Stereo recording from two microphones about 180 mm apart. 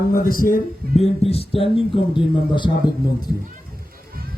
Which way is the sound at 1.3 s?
30° left (ahead or behind).